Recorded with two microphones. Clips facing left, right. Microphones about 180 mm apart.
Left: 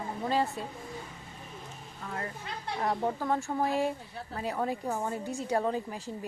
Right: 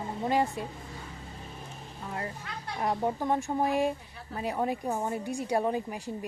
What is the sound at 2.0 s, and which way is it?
Speech, 20° right (ahead or behind).